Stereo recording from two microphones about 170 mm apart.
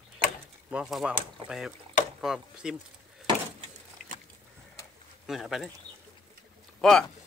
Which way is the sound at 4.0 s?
55° left (ahead or behind).